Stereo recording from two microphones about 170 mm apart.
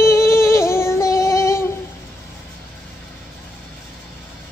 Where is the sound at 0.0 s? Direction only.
15° left (ahead or behind).